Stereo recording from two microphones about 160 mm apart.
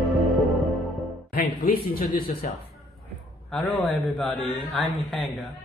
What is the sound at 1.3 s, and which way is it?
A man's voice, 65° left (ahead or behind).